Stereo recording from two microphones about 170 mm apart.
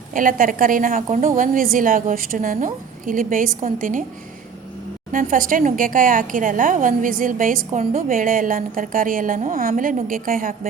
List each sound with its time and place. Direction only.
0.1 s a woman's voice: 50° right (ahead or behind)
5.1 s a woman's voice: 55° right (ahead or behind)